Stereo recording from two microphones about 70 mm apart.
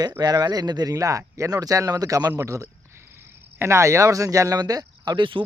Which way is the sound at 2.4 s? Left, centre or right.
Right.